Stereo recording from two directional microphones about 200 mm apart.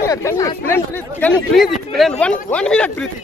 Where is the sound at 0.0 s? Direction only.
15° left (ahead or behind).